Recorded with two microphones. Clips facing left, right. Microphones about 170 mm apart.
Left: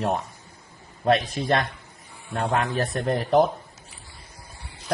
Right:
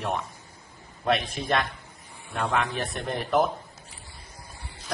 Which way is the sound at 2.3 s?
40° left (ahead or behind).